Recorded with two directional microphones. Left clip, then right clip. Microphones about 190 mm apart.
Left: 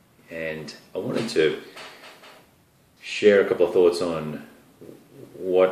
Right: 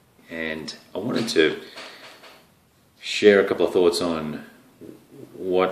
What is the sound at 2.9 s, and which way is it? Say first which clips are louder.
Speech: right 1 dB; 45° right (ahead or behind).